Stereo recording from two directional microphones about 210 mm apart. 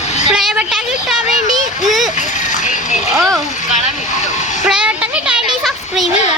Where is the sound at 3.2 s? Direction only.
Centre (ahead or behind).